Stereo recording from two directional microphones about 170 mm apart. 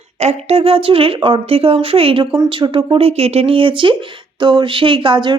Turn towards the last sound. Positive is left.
turn(degrees=-30)  # may be behind; listen again after turning